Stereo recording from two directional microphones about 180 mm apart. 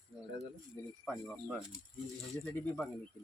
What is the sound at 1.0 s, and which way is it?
Speech, 5° left (ahead or behind).